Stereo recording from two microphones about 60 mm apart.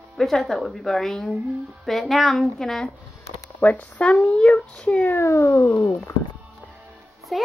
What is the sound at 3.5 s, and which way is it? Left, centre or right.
Speech, left.